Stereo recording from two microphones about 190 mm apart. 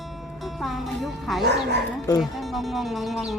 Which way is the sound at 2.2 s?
Centre (ahead or behind).